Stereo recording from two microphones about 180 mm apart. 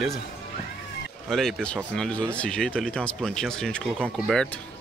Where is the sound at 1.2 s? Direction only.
Centre (ahead or behind).